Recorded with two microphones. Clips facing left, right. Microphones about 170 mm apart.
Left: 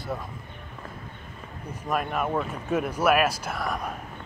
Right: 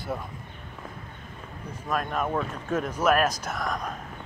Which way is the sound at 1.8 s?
10° left (ahead or behind).